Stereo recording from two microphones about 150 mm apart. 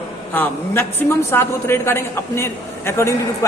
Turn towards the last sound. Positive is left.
turn(degrees=15)  # may be behind; listen again after turning